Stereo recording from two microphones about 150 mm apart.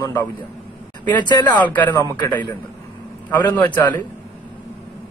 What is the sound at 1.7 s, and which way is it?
Speech, 10° left (ahead or behind).